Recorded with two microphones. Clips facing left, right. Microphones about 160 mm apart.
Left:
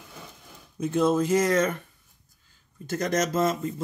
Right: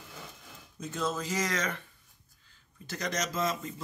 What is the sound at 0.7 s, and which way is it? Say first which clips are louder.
Speech: left 11 dB; 55° left (ahead or behind).